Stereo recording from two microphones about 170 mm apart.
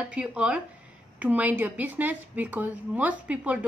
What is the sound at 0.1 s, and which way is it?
A woman's voice, 5° right (ahead or behind).